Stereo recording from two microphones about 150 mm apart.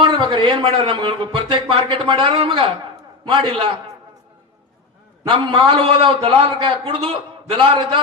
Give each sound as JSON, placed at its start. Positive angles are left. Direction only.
{"t": 0.0, "sound": "a man's voice", "side_deg": -35}
{"t": 5.3, "sound": "a man's voice", "side_deg": -35}